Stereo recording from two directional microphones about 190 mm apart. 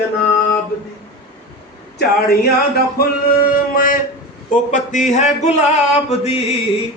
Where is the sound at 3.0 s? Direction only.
50° left (ahead or behind); by 6.6 s 30° left (ahead or behind).